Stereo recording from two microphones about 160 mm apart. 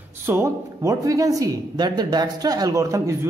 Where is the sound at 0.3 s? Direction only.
20° right (ahead or behind).